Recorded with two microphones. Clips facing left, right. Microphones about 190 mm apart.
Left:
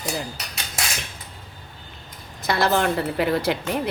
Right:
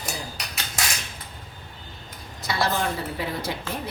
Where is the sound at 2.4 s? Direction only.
65° left (ahead or behind).